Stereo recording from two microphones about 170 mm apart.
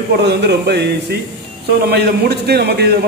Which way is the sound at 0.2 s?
75° right (ahead or behind).